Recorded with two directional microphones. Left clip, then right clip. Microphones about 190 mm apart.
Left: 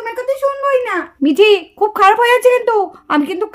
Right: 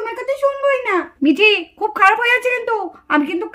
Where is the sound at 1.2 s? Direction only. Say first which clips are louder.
Left 4 dB; 55° left (ahead or behind).